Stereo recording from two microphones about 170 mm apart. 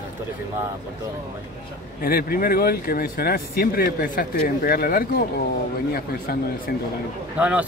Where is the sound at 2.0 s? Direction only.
60° left (ahead or behind).